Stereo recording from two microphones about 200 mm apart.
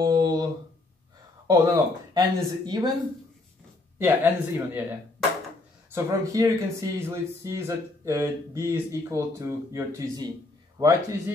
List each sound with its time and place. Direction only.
0.0 s a sound: 20° right (ahead or behind)
1.5 s speech: 20° right (ahead or behind)
4.0 s speech: 10° right (ahead or behind)
5.9 s speech: 15° right (ahead or behind)